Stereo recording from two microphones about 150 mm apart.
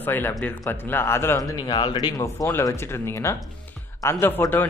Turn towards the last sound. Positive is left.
turn(degrees=15)  # may be behind; listen again after turning